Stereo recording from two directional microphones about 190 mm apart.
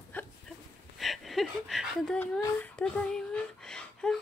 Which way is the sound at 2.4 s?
5° left (ahead or behind).